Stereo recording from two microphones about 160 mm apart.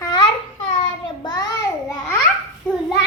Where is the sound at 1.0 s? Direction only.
25° left (ahead or behind).